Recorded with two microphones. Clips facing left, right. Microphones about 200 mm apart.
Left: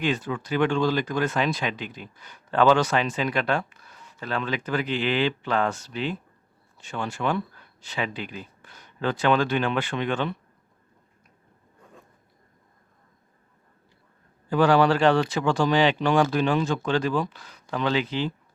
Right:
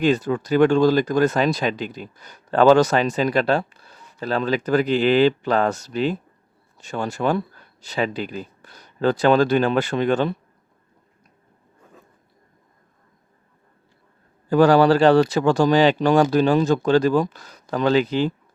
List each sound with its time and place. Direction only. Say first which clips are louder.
0.0 s speech: right 7 dB; 40° right (ahead or behind)
14.5 s speech: right 5 dB; 40° right (ahead or behind)